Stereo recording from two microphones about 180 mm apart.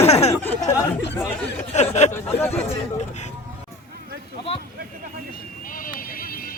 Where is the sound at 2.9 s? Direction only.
40° left (ahead or behind).